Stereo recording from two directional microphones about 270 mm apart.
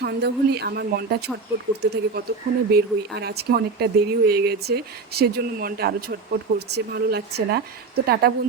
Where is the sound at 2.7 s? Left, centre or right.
Right.